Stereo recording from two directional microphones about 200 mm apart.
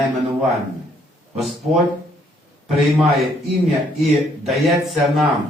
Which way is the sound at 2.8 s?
Centre (ahead or behind).